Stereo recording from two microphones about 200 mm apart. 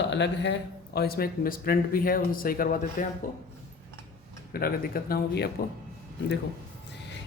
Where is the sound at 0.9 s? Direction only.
50° left (ahead or behind).